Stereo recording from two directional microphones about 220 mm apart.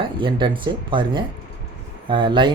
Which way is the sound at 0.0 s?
20° right (ahead or behind).